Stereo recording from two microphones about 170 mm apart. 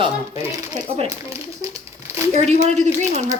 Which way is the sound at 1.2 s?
15° right (ahead or behind).